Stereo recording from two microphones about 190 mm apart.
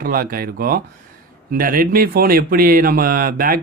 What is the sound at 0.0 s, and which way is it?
Speech, 50° right (ahead or behind).